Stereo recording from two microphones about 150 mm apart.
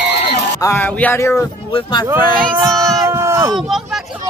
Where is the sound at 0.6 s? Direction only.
15° left (ahead or behind).